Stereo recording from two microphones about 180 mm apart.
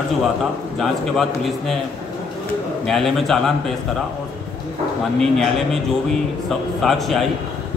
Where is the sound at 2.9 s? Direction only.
Centre (ahead or behind).